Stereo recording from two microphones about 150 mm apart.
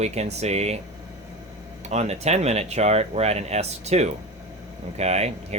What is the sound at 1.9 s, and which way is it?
Speech, 45° right (ahead or behind).